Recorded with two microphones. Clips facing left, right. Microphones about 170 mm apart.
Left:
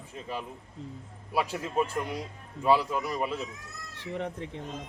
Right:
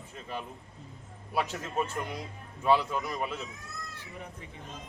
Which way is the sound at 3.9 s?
90° left.